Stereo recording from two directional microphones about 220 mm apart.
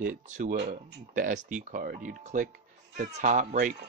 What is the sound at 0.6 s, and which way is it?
Speech, 45° right (ahead or behind).